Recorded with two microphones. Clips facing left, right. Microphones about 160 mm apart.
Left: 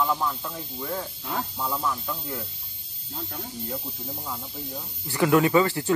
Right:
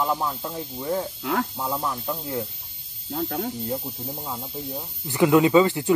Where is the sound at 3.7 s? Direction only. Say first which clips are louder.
Right 5 dB; 25° right (ahead or behind).